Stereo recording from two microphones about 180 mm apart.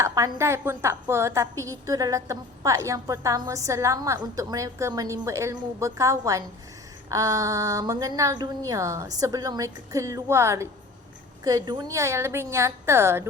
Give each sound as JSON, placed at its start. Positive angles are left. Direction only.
{"t": 0.0, "sound": "a woman's voice", "side_deg": -15}